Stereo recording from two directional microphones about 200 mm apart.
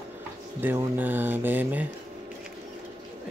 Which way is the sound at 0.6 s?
10° right (ahead or behind).